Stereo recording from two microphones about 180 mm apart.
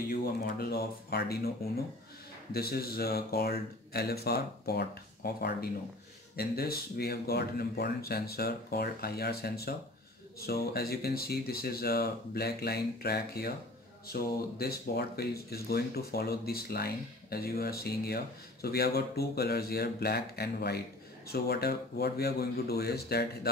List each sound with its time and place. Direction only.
0.1 s speech: 55° left (ahead or behind)
2.5 s speech: 60° left (ahead or behind)